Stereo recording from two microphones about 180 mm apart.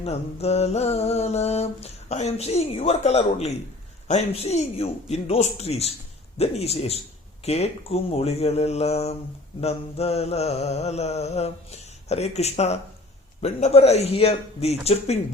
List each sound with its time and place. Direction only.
0.0 s mantra: 35° left (ahead or behind)